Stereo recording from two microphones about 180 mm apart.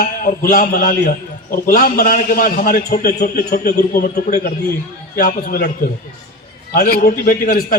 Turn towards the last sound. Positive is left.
turn(degrees=55)  # may be behind; listen again after turning